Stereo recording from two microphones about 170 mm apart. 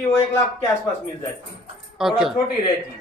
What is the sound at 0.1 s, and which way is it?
Speech, 15° left (ahead or behind).